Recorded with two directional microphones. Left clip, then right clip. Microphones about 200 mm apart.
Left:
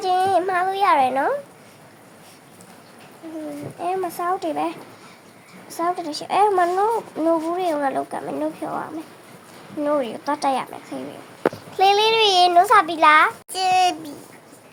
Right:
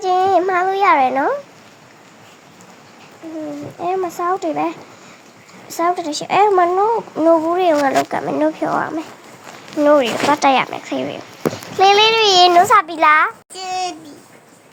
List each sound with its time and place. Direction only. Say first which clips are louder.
0.0 s a sound: right 4 dB; 15° right (ahead or behind)
3.8 s a child's voice: right 4 dB; 15° right (ahead or behind)
11.8 s a child's voice: right 5 dB; 5° right (ahead or behind)
13.5 s a child's voice: left 5 dB; 35° left (ahead or behind)